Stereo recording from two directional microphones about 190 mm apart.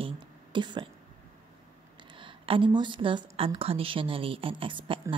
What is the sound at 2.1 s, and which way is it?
A woman's voice, 25° right (ahead or behind).